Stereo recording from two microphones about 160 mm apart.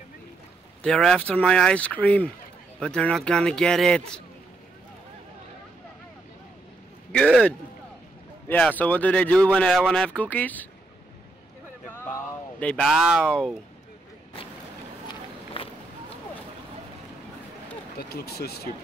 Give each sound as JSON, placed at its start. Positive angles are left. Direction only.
{"t": 0.8, "sound": "a man's voice", "side_deg": 5}
{"t": 7.1, "sound": "a man's voice", "side_deg": 5}
{"t": 12.5, "sound": "a man's voice", "side_deg": 5}
{"t": 15.0, "sound": "walk", "side_deg": 35}
{"t": 17.9, "sound": "speech", "side_deg": 80}